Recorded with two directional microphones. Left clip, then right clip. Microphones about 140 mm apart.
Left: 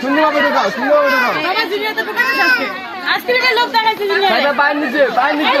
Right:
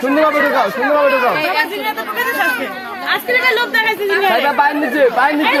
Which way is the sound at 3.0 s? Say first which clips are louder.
Even; 15° right (ahead or behind).